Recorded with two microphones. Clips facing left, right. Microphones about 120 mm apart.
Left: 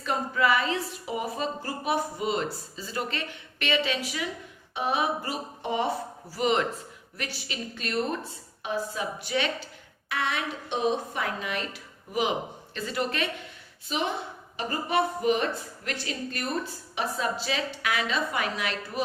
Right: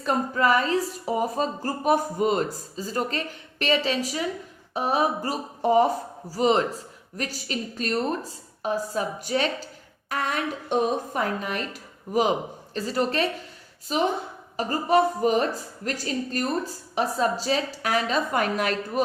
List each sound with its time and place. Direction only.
0.0 s a woman's voice: 40° right (ahead or behind)